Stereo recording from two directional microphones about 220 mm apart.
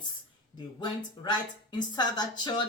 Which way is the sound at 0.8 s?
20° left (ahead or behind).